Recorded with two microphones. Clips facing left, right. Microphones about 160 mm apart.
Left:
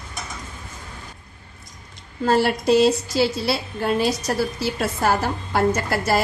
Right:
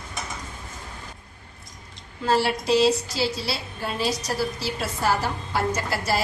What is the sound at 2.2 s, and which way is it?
A woman's voice, 50° left (ahead or behind).